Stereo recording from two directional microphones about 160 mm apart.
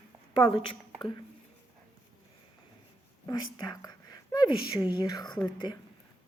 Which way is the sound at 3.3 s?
25° left (ahead or behind).